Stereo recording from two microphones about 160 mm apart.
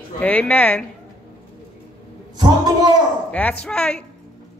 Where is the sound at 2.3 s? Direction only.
25° right (ahead or behind).